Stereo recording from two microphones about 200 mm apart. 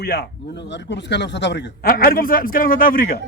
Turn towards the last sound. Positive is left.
turn(degrees=45)  # may be behind; listen again after turning